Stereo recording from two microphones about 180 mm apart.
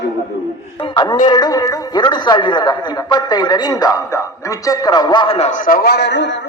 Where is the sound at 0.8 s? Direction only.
25° left (ahead or behind); by 6.4 s 75° left (ahead or behind).